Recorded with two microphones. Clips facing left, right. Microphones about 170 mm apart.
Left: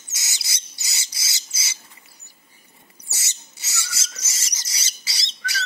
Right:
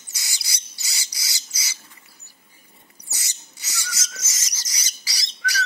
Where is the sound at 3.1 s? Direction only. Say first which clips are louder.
Even; 25° left (ahead or behind).